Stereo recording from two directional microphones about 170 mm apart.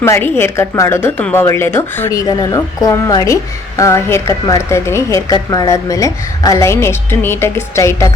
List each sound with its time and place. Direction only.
0.0 s a woman's voice: 15° left (ahead or behind)